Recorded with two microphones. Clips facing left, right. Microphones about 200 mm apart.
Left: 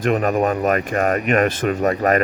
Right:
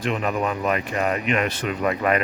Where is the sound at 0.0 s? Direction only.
50° left (ahead or behind).